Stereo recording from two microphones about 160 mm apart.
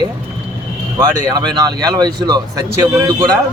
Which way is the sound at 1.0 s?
25° right (ahead or behind).